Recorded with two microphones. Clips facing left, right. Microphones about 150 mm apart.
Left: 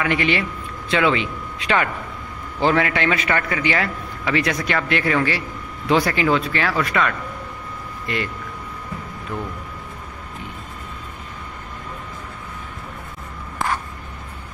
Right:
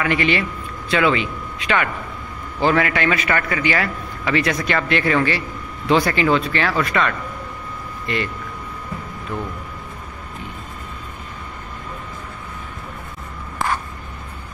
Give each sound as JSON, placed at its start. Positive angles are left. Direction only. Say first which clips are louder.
{"t": 0.0, "sound": "a man's voice", "louder": "right 1 dB", "side_deg": 15}